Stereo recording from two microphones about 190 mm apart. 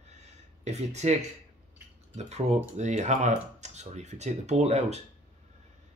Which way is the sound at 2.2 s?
35° right (ahead or behind).